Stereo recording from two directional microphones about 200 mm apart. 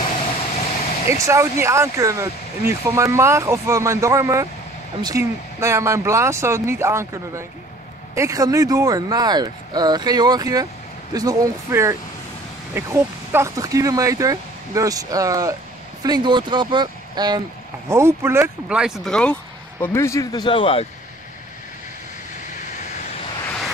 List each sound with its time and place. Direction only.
1.0 s speech: 15° right (ahead or behind); by 19.3 s 5° left (ahead or behind)
19.8 s a man's voice: 15° left (ahead or behind)